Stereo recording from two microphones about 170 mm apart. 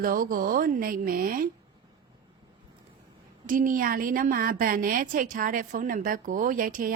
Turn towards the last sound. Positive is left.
turn(degrees=-55)  # may be behind; listen again after turning